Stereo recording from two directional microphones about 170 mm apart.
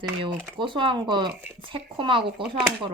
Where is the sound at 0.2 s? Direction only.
30° right (ahead or behind).